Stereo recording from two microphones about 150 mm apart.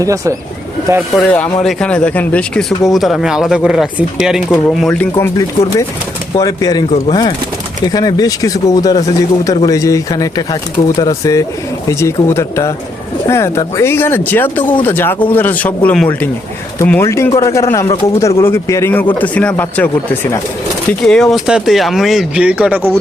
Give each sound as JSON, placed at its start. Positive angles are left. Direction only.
{"t": 0.0, "sound": "speech", "side_deg": -20}
{"t": 1.1, "sound": "speech", "side_deg": 5}
{"t": 4.8, "sound": "speech", "side_deg": 10}